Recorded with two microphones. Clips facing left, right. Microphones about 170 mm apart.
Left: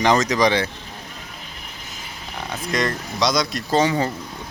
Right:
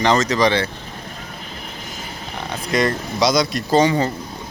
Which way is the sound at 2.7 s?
5° right (ahead or behind).